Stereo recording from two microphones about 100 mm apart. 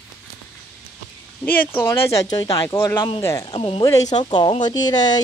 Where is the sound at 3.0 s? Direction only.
60° left (ahead or behind).